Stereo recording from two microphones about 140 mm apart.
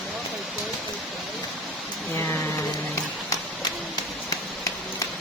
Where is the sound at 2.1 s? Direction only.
15° left (ahead or behind).